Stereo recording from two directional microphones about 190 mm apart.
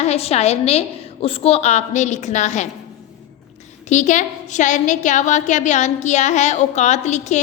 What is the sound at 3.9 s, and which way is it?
Speech, 40° left (ahead or behind).